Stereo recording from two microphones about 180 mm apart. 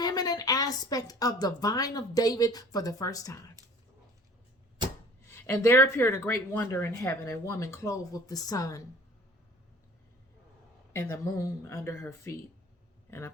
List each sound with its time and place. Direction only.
0.0 s a woman's voice: 20° left (ahead or behind)
5.3 s speech: 15° left (ahead or behind)
10.9 s speech: 15° left (ahead or behind)